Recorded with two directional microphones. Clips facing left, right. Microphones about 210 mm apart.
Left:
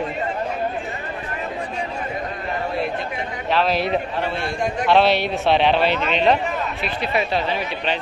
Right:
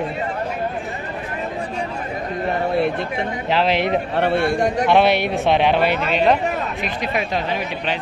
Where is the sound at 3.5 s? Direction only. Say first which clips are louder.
Right 1 dB; 25° right (ahead or behind).